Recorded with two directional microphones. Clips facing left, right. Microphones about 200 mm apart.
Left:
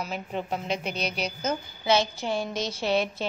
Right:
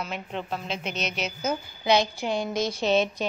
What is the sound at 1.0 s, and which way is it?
Speech, 35° left (ahead or behind).